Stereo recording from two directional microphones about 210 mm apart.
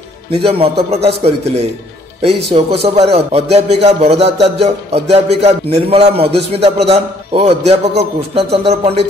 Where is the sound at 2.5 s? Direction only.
25° right (ahead or behind).